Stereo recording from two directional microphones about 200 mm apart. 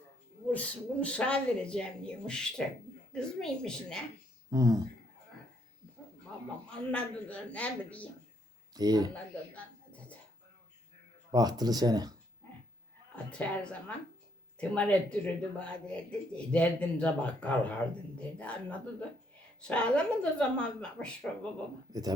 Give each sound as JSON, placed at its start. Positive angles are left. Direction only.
{"t": 0.5, "sound": "speech", "side_deg": 5}
{"t": 4.5, "sound": "speech", "side_deg": -15}
{"t": 6.3, "sound": "a sound", "side_deg": 5}
{"t": 6.7, "sound": "speech", "side_deg": 5}
{"t": 8.7, "sound": "speech", "side_deg": -20}
{"t": 11.3, "sound": "speech", "side_deg": -20}
{"t": 13.4, "sound": "speech", "side_deg": 5}
{"t": 21.9, "sound": "speech", "side_deg": -20}